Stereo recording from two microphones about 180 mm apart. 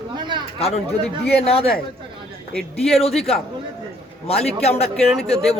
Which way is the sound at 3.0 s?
35° left (ahead or behind).